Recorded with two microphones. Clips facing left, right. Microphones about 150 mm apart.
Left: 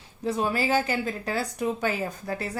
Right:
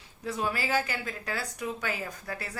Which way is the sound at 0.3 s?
25° left (ahead or behind).